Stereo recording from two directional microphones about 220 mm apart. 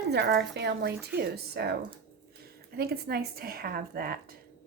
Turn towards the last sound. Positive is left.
turn(degrees=-45)  # may be behind; listen again after turning